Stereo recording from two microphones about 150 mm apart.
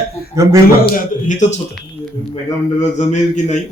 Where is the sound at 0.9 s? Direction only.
55° left (ahead or behind).